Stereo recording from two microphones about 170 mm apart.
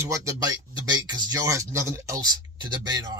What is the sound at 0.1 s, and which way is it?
Speech, 20° right (ahead or behind).